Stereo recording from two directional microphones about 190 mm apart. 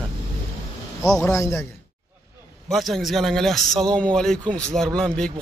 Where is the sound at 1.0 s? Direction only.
15° left (ahead or behind).